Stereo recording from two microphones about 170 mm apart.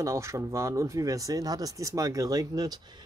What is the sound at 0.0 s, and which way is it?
Speech, 15° right (ahead or behind).